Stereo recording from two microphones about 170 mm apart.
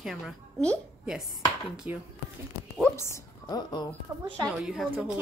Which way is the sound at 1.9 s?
10° right (ahead or behind).